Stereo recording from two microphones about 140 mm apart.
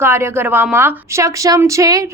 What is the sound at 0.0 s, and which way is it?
A woman's voice, 20° right (ahead or behind).